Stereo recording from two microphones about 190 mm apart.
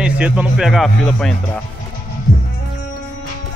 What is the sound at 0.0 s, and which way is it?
Speech, 5° right (ahead or behind).